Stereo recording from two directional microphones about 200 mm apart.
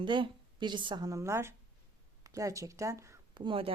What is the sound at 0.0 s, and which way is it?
A woman's voice, 25° right (ahead or behind).